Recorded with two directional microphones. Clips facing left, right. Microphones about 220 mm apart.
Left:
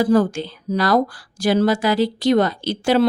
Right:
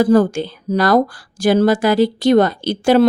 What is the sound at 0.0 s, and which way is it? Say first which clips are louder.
Speech: right 4 dB; 45° right (ahead or behind).